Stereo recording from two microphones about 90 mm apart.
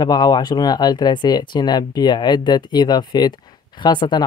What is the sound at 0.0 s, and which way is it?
Speech, 50° left (ahead or behind).